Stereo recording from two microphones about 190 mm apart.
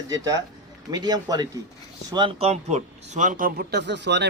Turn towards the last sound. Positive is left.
turn(degrees=-65)  # may be behind; listen again after turning